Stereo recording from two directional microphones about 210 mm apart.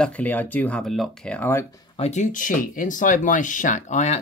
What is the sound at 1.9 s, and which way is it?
Speech, 30° left (ahead or behind).